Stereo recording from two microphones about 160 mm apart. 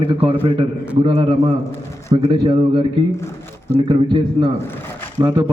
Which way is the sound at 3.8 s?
30° right (ahead or behind).